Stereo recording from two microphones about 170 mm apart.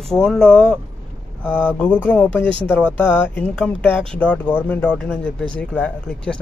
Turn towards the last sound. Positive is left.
turn(degrees=5)  # may be behind; listen again after turning